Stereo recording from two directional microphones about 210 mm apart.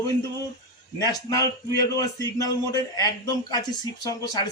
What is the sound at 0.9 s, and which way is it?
Speech, 15° left (ahead or behind).